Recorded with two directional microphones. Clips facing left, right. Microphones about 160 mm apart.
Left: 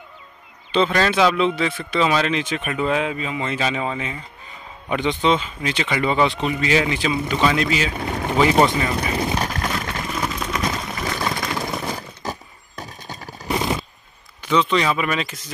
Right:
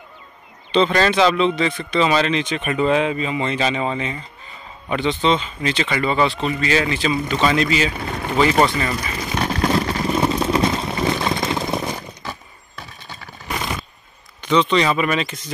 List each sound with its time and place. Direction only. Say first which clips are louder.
0.7 s speech: right 2 dB; 5° left (ahead or behind)
8.0 s speech: even; 20° left (ahead or behind)
9.4 s vehicle: right 6 dB; 30° right (ahead or behind)
12.2 s a sound: left 3 dB; 40° left (ahead or behind)
14.4 s speech: right 2 dB; 5° left (ahead or behind)